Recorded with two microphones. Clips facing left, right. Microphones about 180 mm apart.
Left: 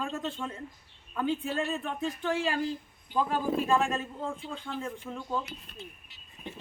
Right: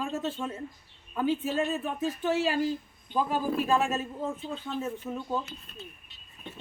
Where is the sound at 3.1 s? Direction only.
10° right (ahead or behind).